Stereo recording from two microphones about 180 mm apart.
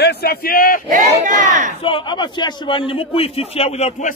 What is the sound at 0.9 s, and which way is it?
Speech, 45° right (ahead or behind).